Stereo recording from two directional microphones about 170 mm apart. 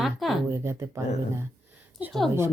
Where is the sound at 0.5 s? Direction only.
15° right (ahead or behind).